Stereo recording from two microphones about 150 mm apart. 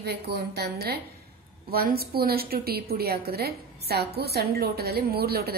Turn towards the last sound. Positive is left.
turn(degrees=-90)